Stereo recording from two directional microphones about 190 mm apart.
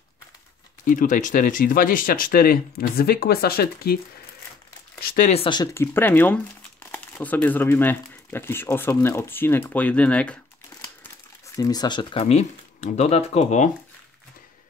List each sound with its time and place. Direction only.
0.8 s speech: 45° left (ahead or behind)
5.0 s a sound: 50° left (ahead or behind)
5.3 s speech: 25° left (ahead or behind)
5.9 s speech: 10° left (ahead or behind)
11.4 s speech: 20° left (ahead or behind); by 13.7 s 35° left (ahead or behind)